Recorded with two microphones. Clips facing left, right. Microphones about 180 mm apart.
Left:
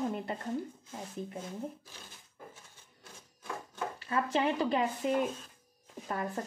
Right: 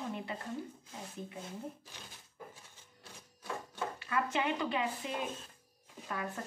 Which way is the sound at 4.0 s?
35° left (ahead or behind).